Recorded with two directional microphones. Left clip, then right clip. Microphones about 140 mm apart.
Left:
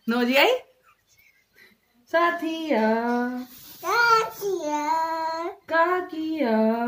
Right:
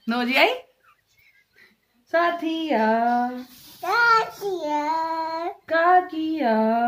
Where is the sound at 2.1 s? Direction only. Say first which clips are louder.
Right 1 dB; 20° right (ahead or behind).